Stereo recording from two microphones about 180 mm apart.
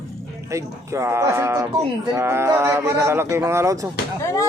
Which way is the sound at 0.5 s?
15° right (ahead or behind).